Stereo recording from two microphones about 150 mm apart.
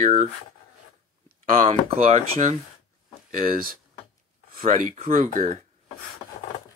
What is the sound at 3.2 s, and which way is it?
Speech, 70° right (ahead or behind).